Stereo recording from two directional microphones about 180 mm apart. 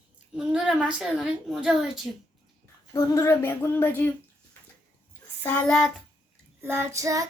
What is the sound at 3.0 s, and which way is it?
Female singing, 15° left (ahead or behind).